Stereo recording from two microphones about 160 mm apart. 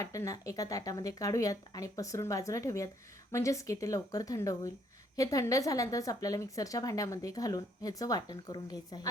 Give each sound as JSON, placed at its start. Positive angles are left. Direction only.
{"t": 0.0, "sound": "a woman's voice", "side_deg": 20}